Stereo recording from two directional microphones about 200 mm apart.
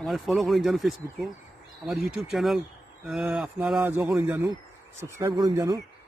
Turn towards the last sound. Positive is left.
turn(degrees=-20)  # may be behind; listen again after turning